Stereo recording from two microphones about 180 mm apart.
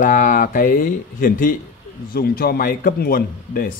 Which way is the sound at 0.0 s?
45° left (ahead or behind).